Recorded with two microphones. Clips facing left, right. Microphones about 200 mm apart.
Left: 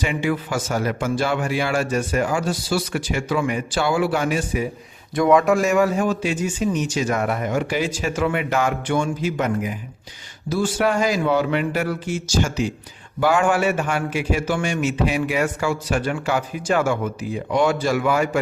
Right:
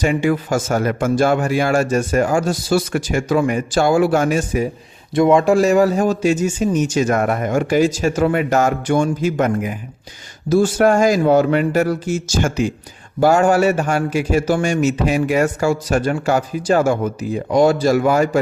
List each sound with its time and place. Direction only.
0.0 s a man's voice: 45° right (ahead or behind)
5.1 s a man's voice: 25° right (ahead or behind); by 12.7 s 50° right (ahead or behind)
13.1 s a man's voice: 40° right (ahead or behind)